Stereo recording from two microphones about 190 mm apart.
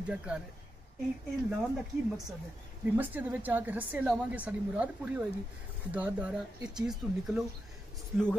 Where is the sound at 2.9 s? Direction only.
10° right (ahead or behind).